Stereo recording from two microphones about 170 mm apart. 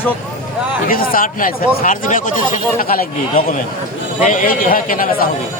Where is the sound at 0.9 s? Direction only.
55° left (ahead or behind).